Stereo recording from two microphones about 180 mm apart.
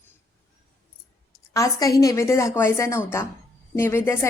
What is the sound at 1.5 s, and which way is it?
A woman's voice, 20° left (ahead or behind).